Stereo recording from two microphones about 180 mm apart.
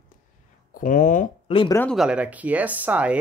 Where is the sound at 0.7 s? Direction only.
50° left (ahead or behind).